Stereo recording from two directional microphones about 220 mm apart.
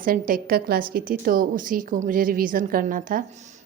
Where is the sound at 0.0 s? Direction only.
40° right (ahead or behind).